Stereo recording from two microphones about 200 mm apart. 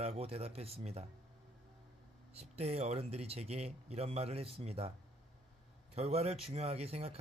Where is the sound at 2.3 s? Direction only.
30° right (ahead or behind).